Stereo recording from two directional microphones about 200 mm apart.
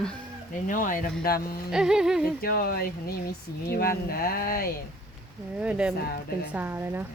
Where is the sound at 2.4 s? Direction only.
50° left (ahead or behind).